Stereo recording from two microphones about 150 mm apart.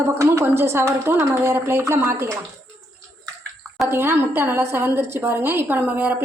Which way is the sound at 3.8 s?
15° right (ahead or behind).